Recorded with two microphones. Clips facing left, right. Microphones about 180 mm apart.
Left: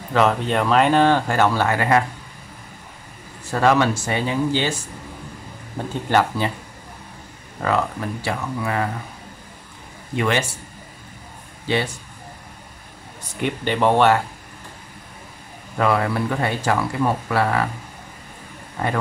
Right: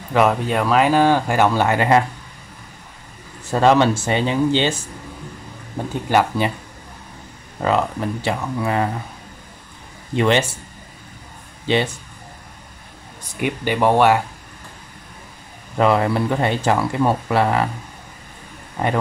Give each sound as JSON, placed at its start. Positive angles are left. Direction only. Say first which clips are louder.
{"t": 0.1, "sound": "speech", "louder": "right 1 dB", "side_deg": -10}
{"t": 3.5, "sound": "speech", "louder": "right 3 dB", "side_deg": -25}
{"t": 6.0, "sound": "speech", "louder": "right 2 dB", "side_deg": -15}
{"t": 7.6, "sound": "speech", "louder": "right 3 dB", "side_deg": -20}
{"t": 10.1, "sound": "speech", "louder": "right 4 dB", "side_deg": -25}
{"t": 11.6, "sound": "speech", "louder": "right 3 dB", "side_deg": -20}
{"t": 13.4, "sound": "speech", "louder": "right 1 dB", "side_deg": -10}
{"t": 15.8, "sound": "speech", "louder": "right 3 dB", "side_deg": -20}
{"t": 18.8, "sound": "speech", "louder": "right 3 dB", "side_deg": -20}